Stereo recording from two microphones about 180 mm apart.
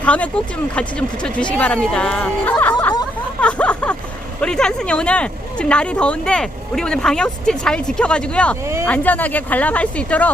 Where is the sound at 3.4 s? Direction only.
5° left (ahead or behind).